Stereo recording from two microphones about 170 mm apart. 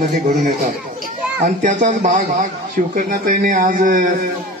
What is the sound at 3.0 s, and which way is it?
Speech, 50° right (ahead or behind).